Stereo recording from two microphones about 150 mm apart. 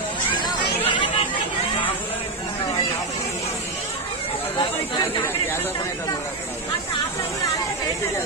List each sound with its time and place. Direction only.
0.8 s chatter: 35° left (ahead or behind)